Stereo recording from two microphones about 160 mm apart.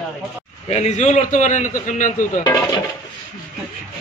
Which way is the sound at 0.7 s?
45° left (ahead or behind).